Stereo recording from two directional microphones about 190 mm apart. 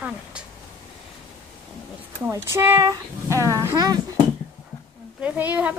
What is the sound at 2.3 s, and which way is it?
Speech, 10° right (ahead or behind).